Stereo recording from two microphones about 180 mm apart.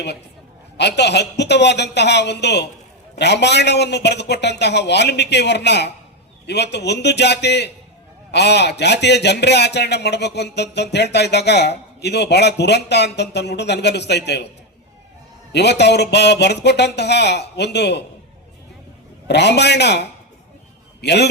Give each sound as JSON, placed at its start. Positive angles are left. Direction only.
{"t": 0.8, "sound": "a man's voice", "side_deg": 70}
{"t": 15.5, "sound": "a man's voice", "side_deg": 70}
{"t": 19.3, "sound": "a man's voice", "side_deg": 70}